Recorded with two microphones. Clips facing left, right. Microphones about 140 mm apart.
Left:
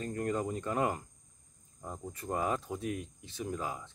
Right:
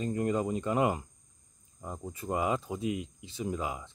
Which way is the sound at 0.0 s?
20° right (ahead or behind).